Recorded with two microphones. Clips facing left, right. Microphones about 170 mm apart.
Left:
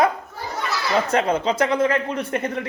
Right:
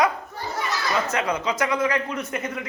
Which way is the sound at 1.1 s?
30° left (ahead or behind).